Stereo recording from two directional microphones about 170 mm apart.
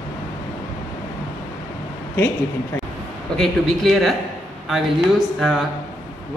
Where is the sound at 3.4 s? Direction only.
Centre (ahead or behind).